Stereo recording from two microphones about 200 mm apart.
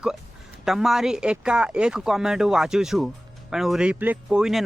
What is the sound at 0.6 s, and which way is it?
Speech, centre (ahead or behind).